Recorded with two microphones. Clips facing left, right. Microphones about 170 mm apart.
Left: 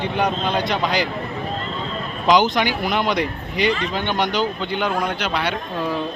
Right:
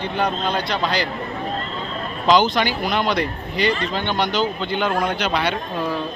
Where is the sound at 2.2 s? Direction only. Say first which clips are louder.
Even; 15° left (ahead or behind).